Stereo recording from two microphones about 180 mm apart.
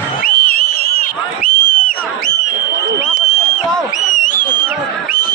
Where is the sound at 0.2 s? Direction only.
55° left (ahead or behind).